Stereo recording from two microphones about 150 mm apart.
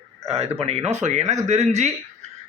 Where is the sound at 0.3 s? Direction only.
40° right (ahead or behind).